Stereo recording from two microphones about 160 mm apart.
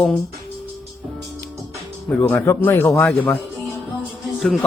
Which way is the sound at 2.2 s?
15° left (ahead or behind).